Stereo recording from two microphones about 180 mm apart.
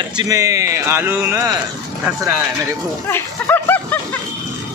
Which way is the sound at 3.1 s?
10° left (ahead or behind).